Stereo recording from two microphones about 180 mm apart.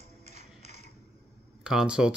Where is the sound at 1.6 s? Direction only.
5° right (ahead or behind).